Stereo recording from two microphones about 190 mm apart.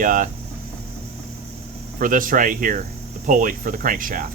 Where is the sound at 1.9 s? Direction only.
45° right (ahead or behind).